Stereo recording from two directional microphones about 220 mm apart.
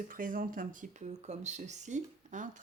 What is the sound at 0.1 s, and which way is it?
Speech, 40° right (ahead or behind).